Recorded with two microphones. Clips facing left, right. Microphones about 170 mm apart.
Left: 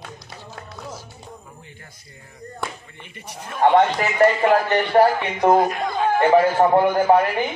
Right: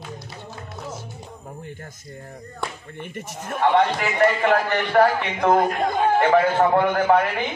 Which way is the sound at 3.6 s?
30° left (ahead or behind).